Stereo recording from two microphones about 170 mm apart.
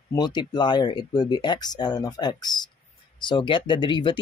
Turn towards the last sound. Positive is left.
turn(degrees=30)  # may be behind; listen again after turning